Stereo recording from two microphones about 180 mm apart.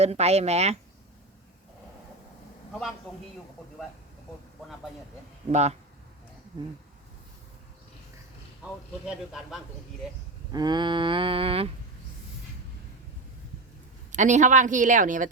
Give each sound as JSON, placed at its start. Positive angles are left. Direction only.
{"t": 0.0, "sound": "speech", "side_deg": -35}
{"t": 5.5, "sound": "speech", "side_deg": -40}
{"t": 9.0, "sound": "speech", "side_deg": -5}
{"t": 10.5, "sound": "a sound", "side_deg": -25}
{"t": 14.1, "sound": "speech", "side_deg": -40}